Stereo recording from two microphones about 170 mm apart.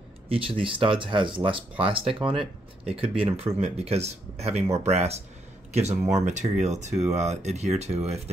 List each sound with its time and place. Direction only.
0.3 s speech: 30° right (ahead or behind)